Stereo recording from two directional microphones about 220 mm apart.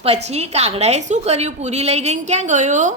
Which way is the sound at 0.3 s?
30° right (ahead or behind).